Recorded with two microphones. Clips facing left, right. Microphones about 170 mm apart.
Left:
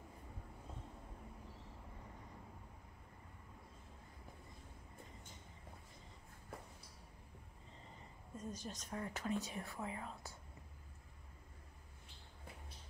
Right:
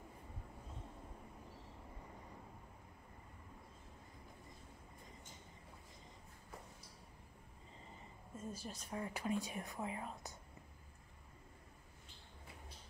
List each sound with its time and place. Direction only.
8.4 s speech: 5° right (ahead or behind)